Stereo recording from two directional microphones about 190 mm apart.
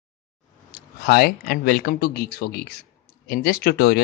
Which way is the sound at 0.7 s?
50° left (ahead or behind).